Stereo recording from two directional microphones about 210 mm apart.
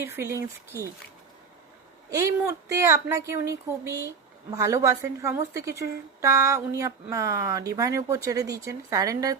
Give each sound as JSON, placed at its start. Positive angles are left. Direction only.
{"t": 0.0, "sound": "a woman's voice", "side_deg": -10}
{"t": 2.0, "sound": "a woman's voice", "side_deg": -15}